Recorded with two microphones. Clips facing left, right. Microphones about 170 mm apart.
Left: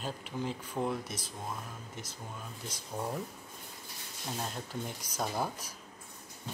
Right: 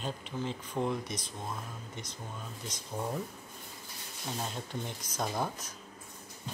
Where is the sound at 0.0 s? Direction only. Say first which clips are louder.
Even; 5° left (ahead or behind).